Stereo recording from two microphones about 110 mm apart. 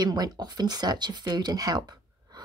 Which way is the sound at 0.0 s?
35° right (ahead or behind).